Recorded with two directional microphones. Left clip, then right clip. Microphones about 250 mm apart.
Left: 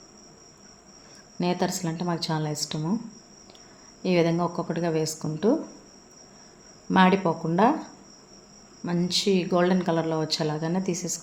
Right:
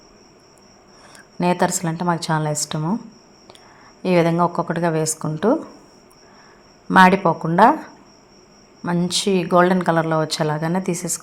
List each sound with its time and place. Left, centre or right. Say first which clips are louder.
1.4 s speech: right 8 dB; centre
4.0 s speech: right 7 dB; centre
6.9 s speech: right 8 dB; centre